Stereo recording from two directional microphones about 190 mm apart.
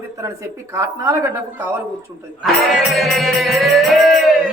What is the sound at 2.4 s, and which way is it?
Music, centre (ahead or behind).